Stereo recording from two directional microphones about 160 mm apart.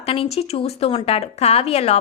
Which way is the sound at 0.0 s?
35° left (ahead or behind).